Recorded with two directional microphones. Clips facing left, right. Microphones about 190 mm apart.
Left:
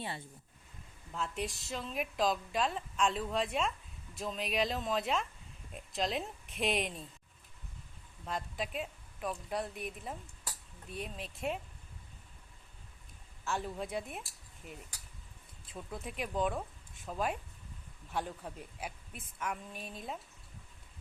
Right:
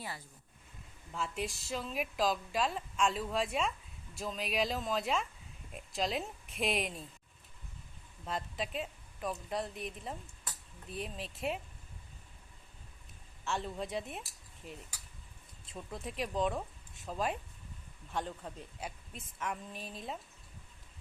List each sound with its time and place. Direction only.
0.0 s speech: 25° left (ahead or behind)
1.1 s a woman's voice: centre (ahead or behind)
8.2 s speech: centre (ahead or behind)
13.4 s a woman's voice: centre (ahead or behind)
15.6 s a woman's voice: centre (ahead or behind)